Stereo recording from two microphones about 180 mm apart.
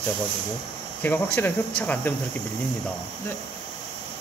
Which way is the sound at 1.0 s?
10° left (ahead or behind).